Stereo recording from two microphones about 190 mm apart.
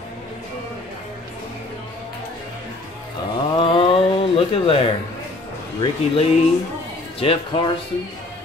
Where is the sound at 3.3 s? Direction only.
25° left (ahead or behind).